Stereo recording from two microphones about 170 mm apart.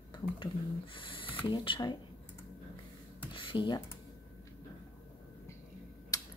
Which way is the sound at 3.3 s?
30° left (ahead or behind).